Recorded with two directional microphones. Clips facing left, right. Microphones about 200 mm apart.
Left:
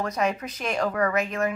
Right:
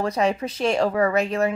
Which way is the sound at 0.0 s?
30° right (ahead or behind).